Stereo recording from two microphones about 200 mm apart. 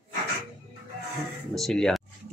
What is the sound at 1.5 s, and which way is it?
Speech, centre (ahead or behind).